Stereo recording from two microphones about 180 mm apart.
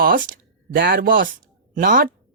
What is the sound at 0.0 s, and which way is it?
Speech, 50° right (ahead or behind).